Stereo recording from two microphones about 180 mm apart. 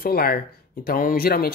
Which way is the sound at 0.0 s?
55° left (ahead or behind).